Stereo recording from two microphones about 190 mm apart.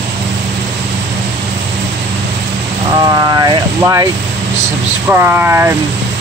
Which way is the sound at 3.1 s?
20° right (ahead or behind).